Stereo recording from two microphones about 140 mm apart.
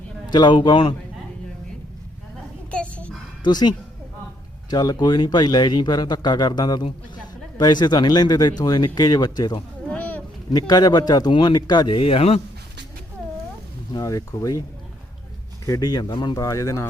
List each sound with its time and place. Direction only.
0.3 s speech: 30° left (ahead or behind)
2.6 s a sound: 10° left (ahead or behind)
3.4 s speech: 30° left (ahead or behind)
9.9 s a sound: 10° left (ahead or behind)
10.5 s speech: 30° left (ahead or behind)
13.9 s speech: 25° left (ahead or behind)
15.6 s speech: 25° left (ahead or behind)